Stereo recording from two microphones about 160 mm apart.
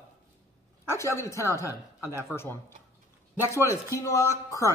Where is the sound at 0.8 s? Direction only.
15° left (ahead or behind).